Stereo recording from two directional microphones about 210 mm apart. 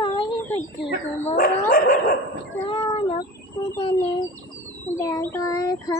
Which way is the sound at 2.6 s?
25° left (ahead or behind).